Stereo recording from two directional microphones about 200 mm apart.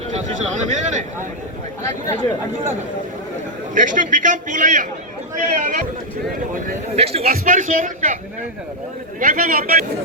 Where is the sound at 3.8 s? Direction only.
40° right (ahead or behind).